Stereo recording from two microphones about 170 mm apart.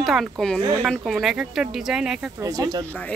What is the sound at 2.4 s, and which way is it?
Speech, 20° right (ahead or behind).